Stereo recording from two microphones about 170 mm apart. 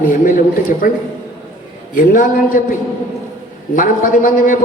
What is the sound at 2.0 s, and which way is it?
Speech, 50° left (ahead or behind).